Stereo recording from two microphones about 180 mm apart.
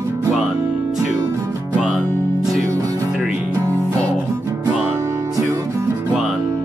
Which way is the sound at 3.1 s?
10° right (ahead or behind).